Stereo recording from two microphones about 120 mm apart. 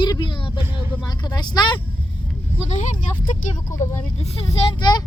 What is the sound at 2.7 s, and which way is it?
Speech, 90° left.